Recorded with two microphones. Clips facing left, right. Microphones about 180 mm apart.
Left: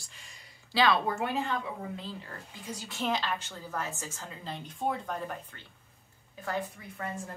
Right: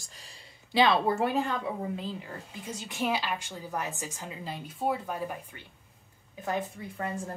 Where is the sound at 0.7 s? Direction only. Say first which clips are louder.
Right 3 dB; 20° right (ahead or behind).